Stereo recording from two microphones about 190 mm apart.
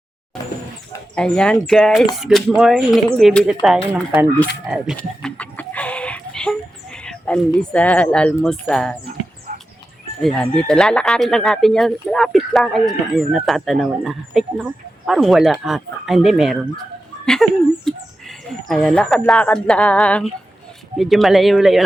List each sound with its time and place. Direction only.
1.1 s speech: 5° left (ahead or behind)
9.5 s music: 45° right (ahead or behind)
10.2 s speech: 5° left (ahead or behind)